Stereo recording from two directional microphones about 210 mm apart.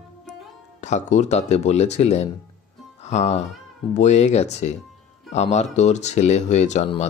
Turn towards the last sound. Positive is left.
turn(degrees=35)  # may be behind; listen again after turning